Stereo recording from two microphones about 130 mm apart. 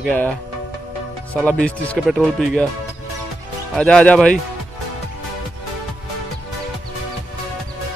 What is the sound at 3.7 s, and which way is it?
Speech, 10° left (ahead or behind).